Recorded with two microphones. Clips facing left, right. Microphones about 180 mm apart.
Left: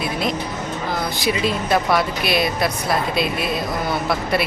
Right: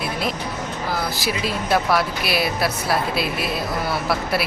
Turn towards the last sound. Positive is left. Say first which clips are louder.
# left 2 dB
turn(degrees=-5)  # may be behind; listen again after turning